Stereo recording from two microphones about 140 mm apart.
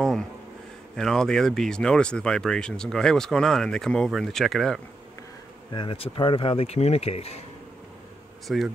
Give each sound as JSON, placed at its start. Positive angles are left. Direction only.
{"t": 0.9, "sound": "speech", "side_deg": 5}
{"t": 5.7, "sound": "speech", "side_deg": 35}
{"t": 8.5, "sound": "speech", "side_deg": -5}